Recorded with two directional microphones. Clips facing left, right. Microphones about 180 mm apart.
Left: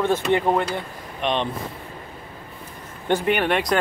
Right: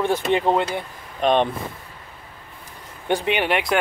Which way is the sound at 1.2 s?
50° right (ahead or behind).